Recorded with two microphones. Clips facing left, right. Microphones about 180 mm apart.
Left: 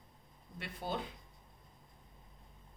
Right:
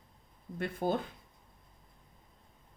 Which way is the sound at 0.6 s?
50° right (ahead or behind).